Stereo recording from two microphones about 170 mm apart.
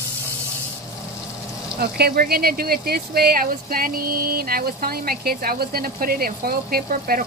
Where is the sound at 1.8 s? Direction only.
65° right (ahead or behind).